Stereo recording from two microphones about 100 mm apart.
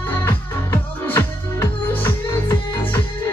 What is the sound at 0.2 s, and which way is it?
Music, 20° left (ahead or behind).